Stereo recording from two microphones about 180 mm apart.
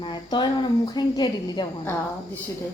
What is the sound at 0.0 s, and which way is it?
Speech, 25° left (ahead or behind).